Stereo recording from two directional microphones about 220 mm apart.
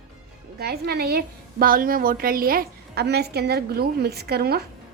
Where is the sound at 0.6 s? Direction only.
45° right (ahead or behind).